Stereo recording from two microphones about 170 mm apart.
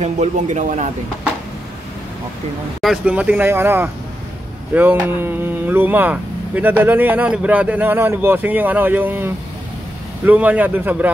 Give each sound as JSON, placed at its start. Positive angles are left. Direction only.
{"t": 0.0, "sound": "a man's voice", "side_deg": -45}
{"t": 2.8, "sound": "speech", "side_deg": -5}